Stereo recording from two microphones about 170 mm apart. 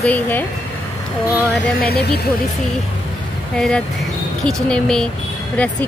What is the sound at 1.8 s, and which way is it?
Speech, 70° left (ahead or behind).